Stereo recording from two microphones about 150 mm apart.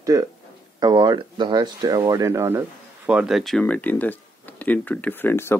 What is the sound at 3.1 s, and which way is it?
Speech, 5° right (ahead or behind).